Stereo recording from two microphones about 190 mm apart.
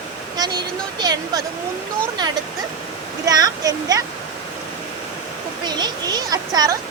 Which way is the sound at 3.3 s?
20° right (ahead or behind).